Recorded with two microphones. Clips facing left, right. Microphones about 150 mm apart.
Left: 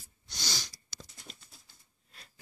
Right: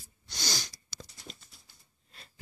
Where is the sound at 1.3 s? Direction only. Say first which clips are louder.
Right 3 dB; 5° left (ahead or behind).